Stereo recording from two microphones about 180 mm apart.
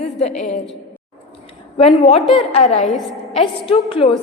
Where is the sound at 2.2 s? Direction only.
Centre (ahead or behind).